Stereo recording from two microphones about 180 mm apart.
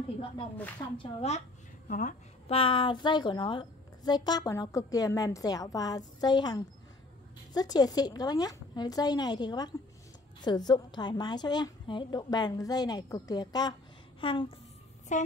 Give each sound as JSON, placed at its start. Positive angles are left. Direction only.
{"t": 0.9, "sound": "speech", "side_deg": 35}
{"t": 1.9, "sound": "a woman's voice", "side_deg": 45}
{"t": 2.4, "sound": "a woman's voice", "side_deg": 30}
{"t": 15.1, "sound": "a woman's voice", "side_deg": 40}